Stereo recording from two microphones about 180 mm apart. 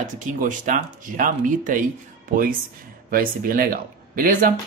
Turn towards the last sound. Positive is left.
turn(degrees=-50)  # may be behind; listen again after turning